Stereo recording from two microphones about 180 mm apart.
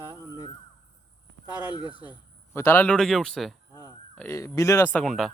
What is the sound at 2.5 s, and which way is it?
Speech, 15° left (ahead or behind).